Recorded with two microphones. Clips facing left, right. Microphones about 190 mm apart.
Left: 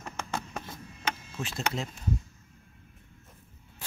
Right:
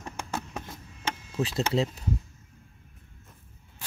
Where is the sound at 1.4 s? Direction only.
35° right (ahead or behind).